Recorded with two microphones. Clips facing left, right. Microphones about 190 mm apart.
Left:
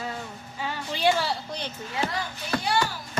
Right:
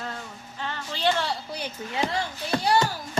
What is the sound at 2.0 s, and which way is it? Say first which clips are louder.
Speech: right 3 dB; 25° right (ahead or behind).